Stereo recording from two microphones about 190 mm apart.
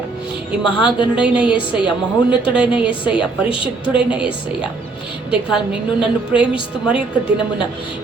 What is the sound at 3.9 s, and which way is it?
A woman's voice, 5° right (ahead or behind).